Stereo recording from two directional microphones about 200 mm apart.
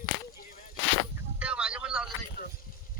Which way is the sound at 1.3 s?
5° right (ahead or behind).